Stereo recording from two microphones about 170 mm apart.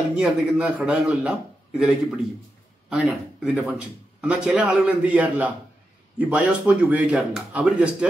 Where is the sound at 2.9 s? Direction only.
5° right (ahead or behind).